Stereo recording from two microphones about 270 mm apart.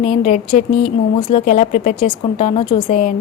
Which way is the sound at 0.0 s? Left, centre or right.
Left.